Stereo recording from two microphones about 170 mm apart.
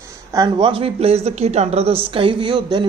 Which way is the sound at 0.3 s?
25° right (ahead or behind).